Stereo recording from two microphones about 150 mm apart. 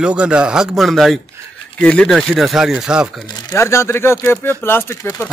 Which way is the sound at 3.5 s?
20° left (ahead or behind).